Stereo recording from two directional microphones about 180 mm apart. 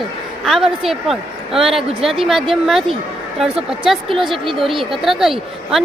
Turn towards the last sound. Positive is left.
turn(degrees=0)  # may be behind; listen again after turning